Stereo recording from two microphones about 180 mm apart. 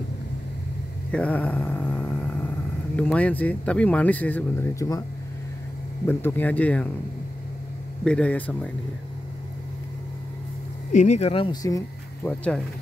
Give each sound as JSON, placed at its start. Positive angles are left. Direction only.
{"t": 1.1, "sound": "mantra", "side_deg": 10}
{"t": 3.0, "sound": "speech", "side_deg": 10}
{"t": 6.0, "sound": "speech", "side_deg": 10}
{"t": 8.0, "sound": "speech", "side_deg": 5}
{"t": 10.9, "sound": "speech", "side_deg": 40}
{"t": 11.6, "sound": "speech", "side_deg": 15}